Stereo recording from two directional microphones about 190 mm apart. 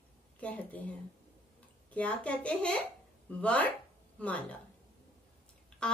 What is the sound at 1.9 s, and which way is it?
Speech, 5° left (ahead or behind).